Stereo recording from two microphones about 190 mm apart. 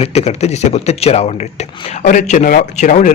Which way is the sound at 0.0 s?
35° left (ahead or behind).